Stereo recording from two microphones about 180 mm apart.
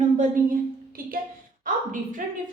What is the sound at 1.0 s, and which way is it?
Speech, 50° right (ahead or behind).